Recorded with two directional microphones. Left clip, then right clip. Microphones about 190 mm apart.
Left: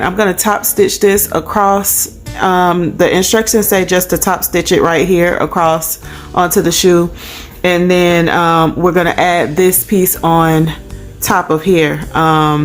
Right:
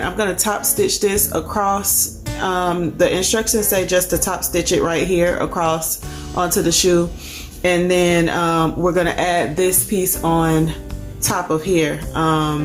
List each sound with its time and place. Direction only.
0.0 s speech: 35° left (ahead or behind)